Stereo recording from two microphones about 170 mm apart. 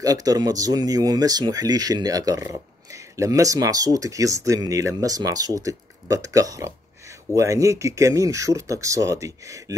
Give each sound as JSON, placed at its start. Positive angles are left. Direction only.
{"t": 0.0, "sound": "speech", "side_deg": -20}